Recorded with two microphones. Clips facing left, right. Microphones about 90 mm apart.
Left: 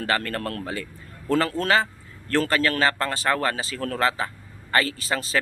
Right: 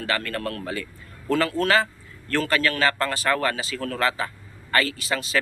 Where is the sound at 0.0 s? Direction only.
35° left (ahead or behind).